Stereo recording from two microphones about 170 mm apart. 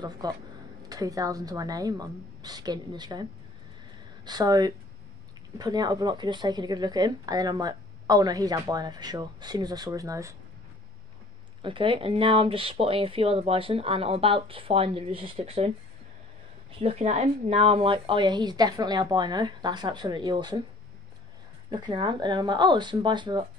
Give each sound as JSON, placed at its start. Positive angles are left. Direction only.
{"t": 0.0, "sound": "speech", "side_deg": -25}
{"t": 11.6, "sound": "speech", "side_deg": -30}
{"t": 16.7, "sound": "speech", "side_deg": -35}
{"t": 21.6, "sound": "speech", "side_deg": -25}